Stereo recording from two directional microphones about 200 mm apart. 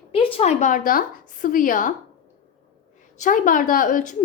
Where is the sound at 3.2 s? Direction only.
40° left (ahead or behind).